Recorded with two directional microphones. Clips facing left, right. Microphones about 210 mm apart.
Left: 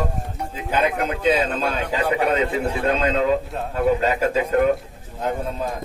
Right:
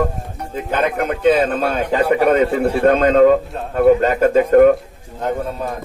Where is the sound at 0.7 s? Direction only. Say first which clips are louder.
Right 3 dB; 50° right (ahead or behind).